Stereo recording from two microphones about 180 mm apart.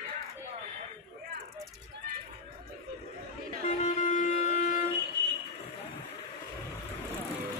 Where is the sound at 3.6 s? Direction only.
40° left (ahead or behind).